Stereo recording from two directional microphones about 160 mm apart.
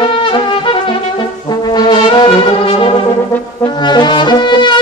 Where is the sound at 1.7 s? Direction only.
25° left (ahead or behind).